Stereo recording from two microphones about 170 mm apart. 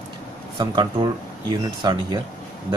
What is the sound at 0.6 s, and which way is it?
Speech, 25° right (ahead or behind).